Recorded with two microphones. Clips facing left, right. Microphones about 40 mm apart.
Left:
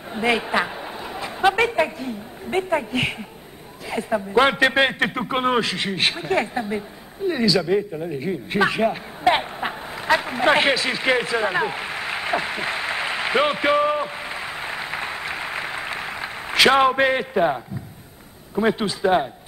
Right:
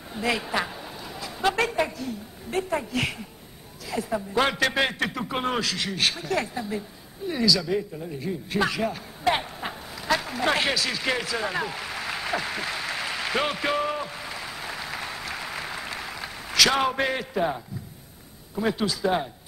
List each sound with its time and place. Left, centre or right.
0.1 s a man's voice: left
7.2 s a sound: left
18.5 s a man's voice: left